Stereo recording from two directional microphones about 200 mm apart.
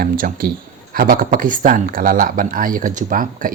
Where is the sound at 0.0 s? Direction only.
45° right (ahead or behind).